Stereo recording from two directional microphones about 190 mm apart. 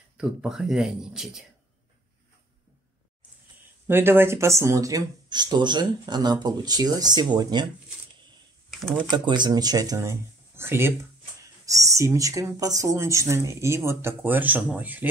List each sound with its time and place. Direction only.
0.2 s speech: 5° right (ahead or behind)
3.8 s speech: 10° right (ahead or behind)
8.8 s speech: 25° right (ahead or behind)